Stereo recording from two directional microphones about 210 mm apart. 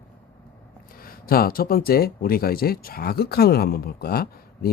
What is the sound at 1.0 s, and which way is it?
Speech, 45° left (ahead or behind).